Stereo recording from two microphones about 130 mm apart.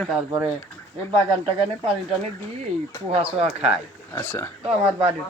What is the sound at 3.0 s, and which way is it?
Speech, 50° right (ahead or behind).